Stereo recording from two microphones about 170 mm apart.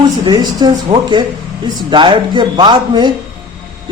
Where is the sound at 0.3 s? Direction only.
25° right (ahead or behind).